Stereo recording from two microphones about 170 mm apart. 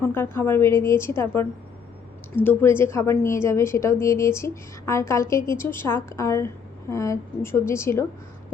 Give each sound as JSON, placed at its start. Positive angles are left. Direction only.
{"t": 0.0, "sound": "a woman's voice", "side_deg": 10}